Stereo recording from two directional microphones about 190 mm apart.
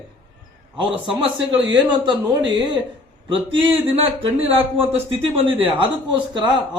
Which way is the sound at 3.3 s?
30° right (ahead or behind).